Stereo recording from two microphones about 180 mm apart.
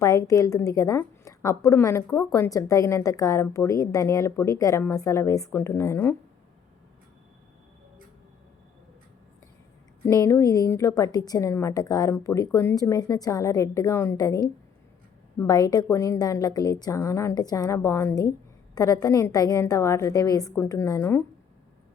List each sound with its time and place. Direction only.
0.0 s a woman's voice: 20° left (ahead or behind)
10.1 s a woman's voice: 15° left (ahead or behind)